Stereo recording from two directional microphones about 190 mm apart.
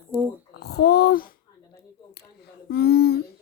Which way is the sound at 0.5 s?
60° left (ahead or behind).